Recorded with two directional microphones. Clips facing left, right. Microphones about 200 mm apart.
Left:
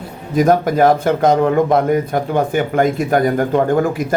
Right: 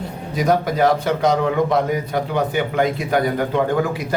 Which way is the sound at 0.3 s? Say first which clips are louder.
Left 5 dB; 50° left (ahead or behind).